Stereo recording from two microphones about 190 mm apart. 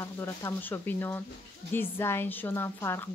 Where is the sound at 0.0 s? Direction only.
15° left (ahead or behind).